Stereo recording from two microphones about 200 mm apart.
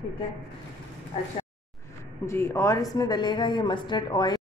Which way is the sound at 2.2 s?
15° left (ahead or behind).